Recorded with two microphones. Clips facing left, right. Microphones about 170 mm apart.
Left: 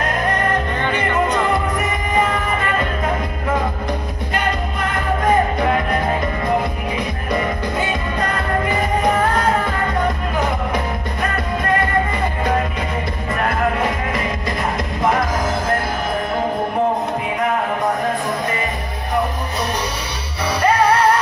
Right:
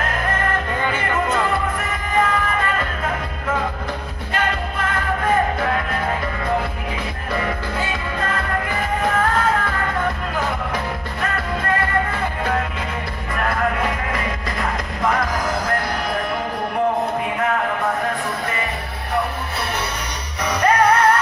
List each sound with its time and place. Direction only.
7.8 s music: 20° left (ahead or behind)
20.4 s music: 10° left (ahead or behind)